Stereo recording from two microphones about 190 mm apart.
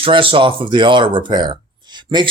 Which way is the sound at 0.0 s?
30° right (ahead or behind).